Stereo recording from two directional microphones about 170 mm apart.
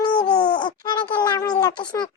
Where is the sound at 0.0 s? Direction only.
25° left (ahead or behind).